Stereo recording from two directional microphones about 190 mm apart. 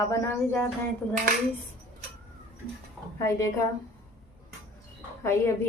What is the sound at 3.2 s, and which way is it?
Speech, 15° left (ahead or behind).